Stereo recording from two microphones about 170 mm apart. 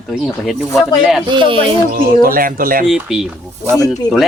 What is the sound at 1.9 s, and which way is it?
Speech, 55° right (ahead or behind).